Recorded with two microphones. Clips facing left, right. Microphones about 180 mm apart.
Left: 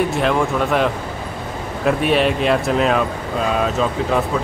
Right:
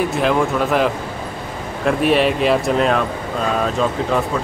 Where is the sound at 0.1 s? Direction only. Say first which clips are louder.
Right 1 dB; centre (ahead or behind).